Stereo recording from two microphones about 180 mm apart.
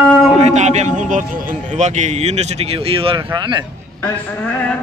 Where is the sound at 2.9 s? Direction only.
30° right (ahead or behind).